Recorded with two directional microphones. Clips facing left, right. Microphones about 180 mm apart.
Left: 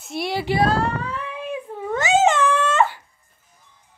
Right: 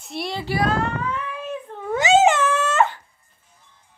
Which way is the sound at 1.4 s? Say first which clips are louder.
Left 2 dB; 10° left (ahead or behind).